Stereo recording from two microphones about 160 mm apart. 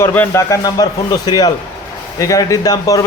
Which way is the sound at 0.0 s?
15° left (ahead or behind).